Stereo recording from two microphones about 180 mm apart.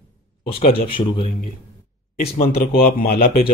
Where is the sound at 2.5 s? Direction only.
55° left (ahead or behind).